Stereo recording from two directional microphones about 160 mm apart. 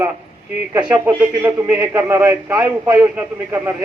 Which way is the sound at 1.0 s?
15° right (ahead or behind).